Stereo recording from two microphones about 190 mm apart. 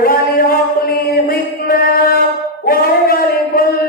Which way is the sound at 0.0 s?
50° left (ahead or behind).